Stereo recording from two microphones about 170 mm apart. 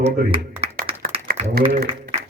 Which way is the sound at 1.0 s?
60° right (ahead or behind).